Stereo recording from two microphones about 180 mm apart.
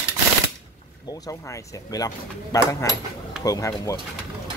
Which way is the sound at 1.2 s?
20° left (ahead or behind).